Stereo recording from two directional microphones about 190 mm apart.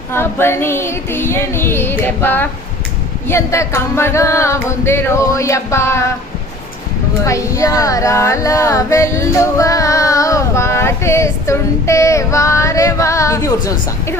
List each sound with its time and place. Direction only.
0.1 s female singing: 10° left (ahead or behind)
7.3 s music: 15° left (ahead or behind)